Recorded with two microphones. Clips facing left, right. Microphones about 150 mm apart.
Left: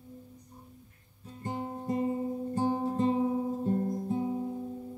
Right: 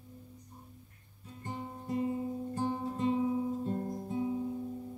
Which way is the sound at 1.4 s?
45° left (ahead or behind).